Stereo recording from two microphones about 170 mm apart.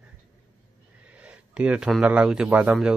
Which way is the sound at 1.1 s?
5° right (ahead or behind).